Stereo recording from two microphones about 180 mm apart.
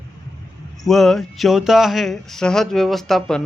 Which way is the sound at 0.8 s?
Centre (ahead or behind).